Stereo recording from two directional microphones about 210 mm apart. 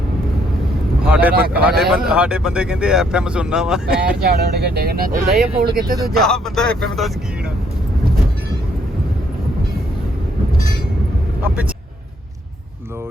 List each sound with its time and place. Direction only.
1.0 s a man's voice: 5° right (ahead or behind)
4.2 s speech: 50° right (ahead or behind)
6.2 s speech: 5° left (ahead or behind)